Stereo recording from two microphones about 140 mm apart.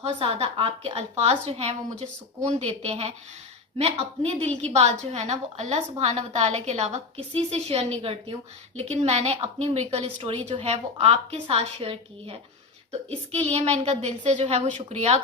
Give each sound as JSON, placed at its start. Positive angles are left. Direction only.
{"t": 0.0, "sound": "a woman's voice", "side_deg": -45}
{"t": 0.9, "sound": "a woman's voice", "side_deg": -50}